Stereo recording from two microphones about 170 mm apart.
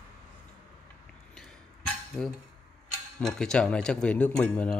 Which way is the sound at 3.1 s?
5° left (ahead or behind).